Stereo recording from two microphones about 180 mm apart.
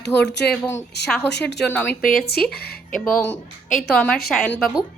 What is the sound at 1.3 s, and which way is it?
Speech, 70° left (ahead or behind).